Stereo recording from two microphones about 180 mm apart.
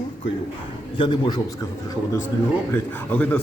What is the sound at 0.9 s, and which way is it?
Speech, 25° left (ahead or behind).